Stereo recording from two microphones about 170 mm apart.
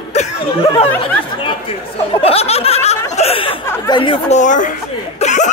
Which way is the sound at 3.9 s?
30° left (ahead or behind).